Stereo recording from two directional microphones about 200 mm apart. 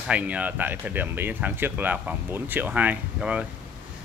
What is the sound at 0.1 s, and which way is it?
Speech, 5° right (ahead or behind).